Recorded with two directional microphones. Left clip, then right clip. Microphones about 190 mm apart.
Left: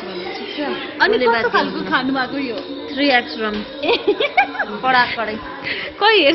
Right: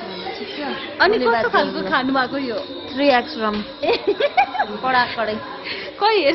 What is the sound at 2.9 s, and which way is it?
Speech, 40° right (ahead or behind).